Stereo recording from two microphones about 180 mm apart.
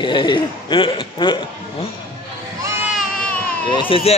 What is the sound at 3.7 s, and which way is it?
Speech, 30° left (ahead or behind).